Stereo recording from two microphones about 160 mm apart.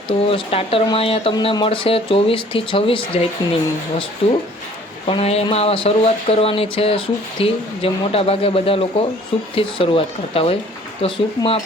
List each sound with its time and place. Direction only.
0.1 s speech: 35° left (ahead or behind)